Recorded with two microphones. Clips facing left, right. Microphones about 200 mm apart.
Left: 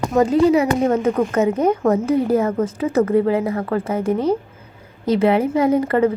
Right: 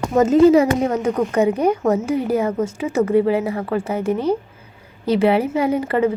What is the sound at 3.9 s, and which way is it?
Speech, 30° left (ahead or behind).